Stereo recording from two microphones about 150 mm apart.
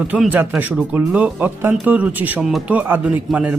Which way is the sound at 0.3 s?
10° right (ahead or behind).